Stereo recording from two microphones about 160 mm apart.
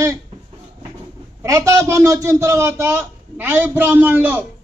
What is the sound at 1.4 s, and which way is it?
A man's voice, 20° right (ahead or behind).